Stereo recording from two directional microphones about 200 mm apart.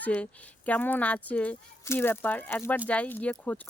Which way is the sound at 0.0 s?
5° left (ahead or behind).